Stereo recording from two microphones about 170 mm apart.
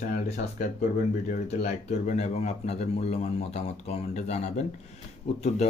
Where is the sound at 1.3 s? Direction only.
45° left (ahead or behind).